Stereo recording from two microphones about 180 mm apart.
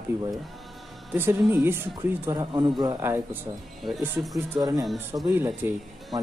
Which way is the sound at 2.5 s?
25° right (ahead or behind).